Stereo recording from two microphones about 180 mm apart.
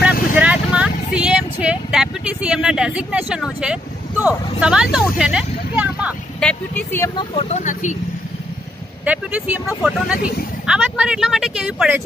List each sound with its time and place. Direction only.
0.4 s vehicle: 5° right (ahead or behind)
6.4 s speech: 10° left (ahead or behind)
7.2 s speech: 35° left (ahead or behind)
9.0 s speech: 10° right (ahead or behind)
10.1 s speech: 55° left (ahead or behind)
10.7 s speech: 5° right (ahead or behind)